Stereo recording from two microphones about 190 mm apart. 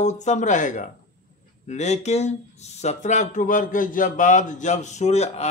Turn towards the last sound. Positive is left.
turn(degrees=35)  # may be behind; listen again after turning